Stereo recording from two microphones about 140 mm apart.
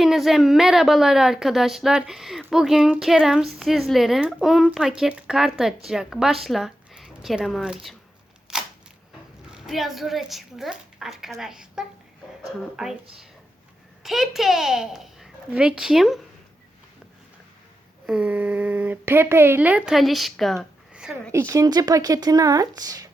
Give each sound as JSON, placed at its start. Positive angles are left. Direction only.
{"t": 0.0, "sound": "a woman's voice", "side_deg": 0}
{"t": 8.5, "sound": "a sound", "side_deg": -5}
{"t": 9.5, "sound": "a woman's voice", "side_deg": -5}
{"t": 14.0, "sound": "a child's voice", "side_deg": 0}
{"t": 18.0, "sound": "speech", "side_deg": -10}
{"t": 21.3, "sound": "speech", "side_deg": -20}